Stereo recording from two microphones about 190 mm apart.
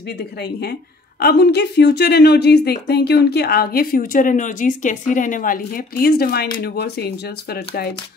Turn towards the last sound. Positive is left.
turn(degrees=55)  # may be behind; listen again after turning